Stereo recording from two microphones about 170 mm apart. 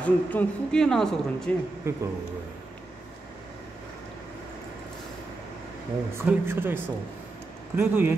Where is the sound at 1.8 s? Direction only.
15° right (ahead or behind).